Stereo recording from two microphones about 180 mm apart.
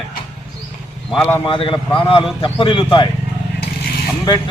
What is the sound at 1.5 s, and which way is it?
A man's voice, 30° left (ahead or behind).